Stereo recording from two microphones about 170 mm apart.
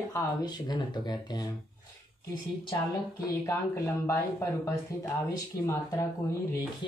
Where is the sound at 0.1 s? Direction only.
25° left (ahead or behind).